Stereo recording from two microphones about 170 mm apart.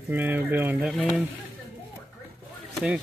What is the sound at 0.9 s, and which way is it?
Speech, centre (ahead or behind).